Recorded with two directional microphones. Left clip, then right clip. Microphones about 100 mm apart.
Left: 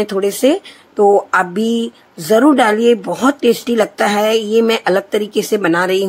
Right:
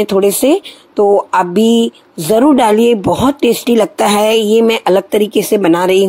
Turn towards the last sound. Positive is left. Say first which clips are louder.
# right 4 dB
turn(degrees=-35)  # may be behind; listen again after turning